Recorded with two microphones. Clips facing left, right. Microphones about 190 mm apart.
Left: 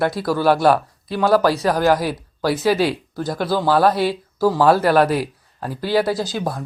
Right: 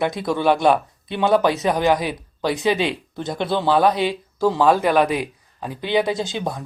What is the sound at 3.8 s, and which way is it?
Speech, 15° right (ahead or behind).